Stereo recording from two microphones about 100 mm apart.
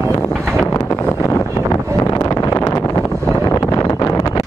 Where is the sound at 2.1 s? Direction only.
35° left (ahead or behind).